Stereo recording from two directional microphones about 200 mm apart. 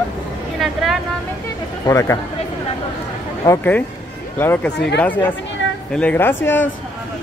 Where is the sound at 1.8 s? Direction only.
15° left (ahead or behind).